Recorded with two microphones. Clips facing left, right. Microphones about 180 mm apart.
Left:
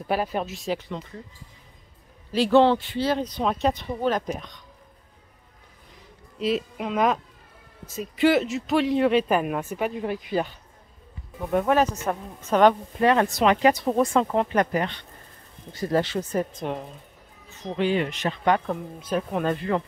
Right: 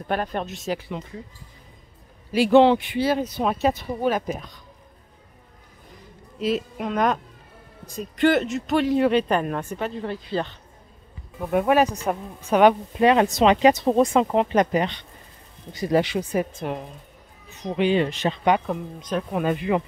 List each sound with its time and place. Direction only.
0.0 s speech: 5° left (ahead or behind); by 1.2 s 10° right (ahead or behind)
2.3 s speech: 15° right (ahead or behind)
6.3 s speech: centre (ahead or behind)
11.5 s speech: 10° right (ahead or behind)
17.5 s speech: 15° right (ahead or behind)
18.9 s speech: 5° left (ahead or behind)
19.4 s speech: 15° right (ahead or behind)